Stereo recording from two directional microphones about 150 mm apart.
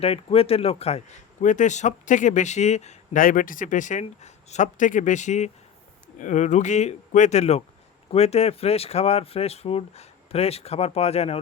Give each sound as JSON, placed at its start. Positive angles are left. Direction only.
{"t": 0.0, "sound": "speech", "side_deg": 40}